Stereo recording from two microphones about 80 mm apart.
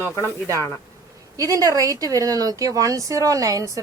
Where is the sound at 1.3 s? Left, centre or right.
Right.